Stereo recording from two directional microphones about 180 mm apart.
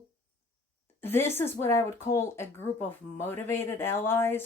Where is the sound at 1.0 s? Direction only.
15° left (ahead or behind).